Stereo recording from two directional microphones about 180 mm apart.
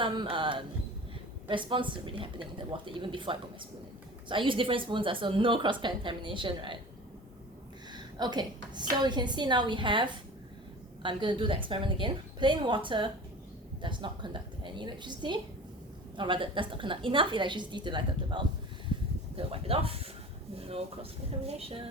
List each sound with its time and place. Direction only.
0.0 s speech: 25° right (ahead or behind)
8.2 s speech: 25° right (ahead or behind)